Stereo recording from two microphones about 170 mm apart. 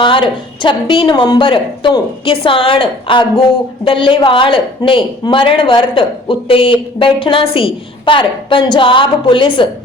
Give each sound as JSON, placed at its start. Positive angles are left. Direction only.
{"t": 0.0, "sound": "a man's voice", "side_deg": 30}